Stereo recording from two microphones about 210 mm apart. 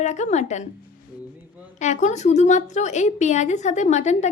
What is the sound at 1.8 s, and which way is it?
A woman's voice, 35° left (ahead or behind).